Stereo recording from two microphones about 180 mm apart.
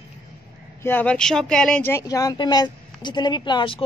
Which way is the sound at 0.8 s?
10° left (ahead or behind).